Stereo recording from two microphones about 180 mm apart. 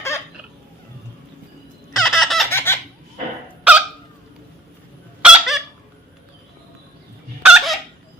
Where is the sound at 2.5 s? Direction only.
15° left (ahead or behind).